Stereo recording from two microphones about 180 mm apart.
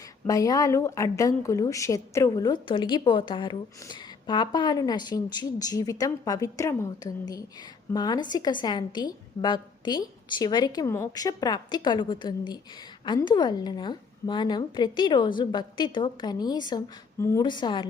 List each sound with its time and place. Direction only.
0.3 s a woman's voice: 20° left (ahead or behind)